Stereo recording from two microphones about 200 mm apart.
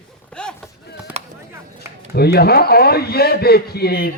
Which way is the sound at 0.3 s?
5° left (ahead or behind).